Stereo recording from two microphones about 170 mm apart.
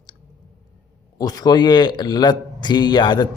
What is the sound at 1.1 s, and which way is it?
A man's voice, 25° left (ahead or behind).